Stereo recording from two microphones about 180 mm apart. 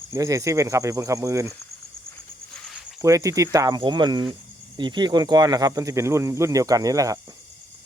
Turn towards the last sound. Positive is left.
turn(degrees=-20)  # may be behind; listen again after turning